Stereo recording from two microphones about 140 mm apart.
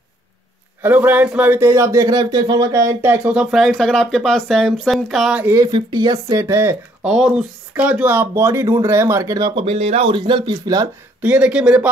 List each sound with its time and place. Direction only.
0.8 s speech: 10° right (ahead or behind)
5.4 s speech: 20° right (ahead or behind)
5.7 s speech: 30° right (ahead or behind)
7.1 s speech: 5° right (ahead or behind); by 9.5 s 25° right (ahead or behind)
9.6 s speech: 40° right (ahead or behind)
11.2 s speech: 10° right (ahead or behind)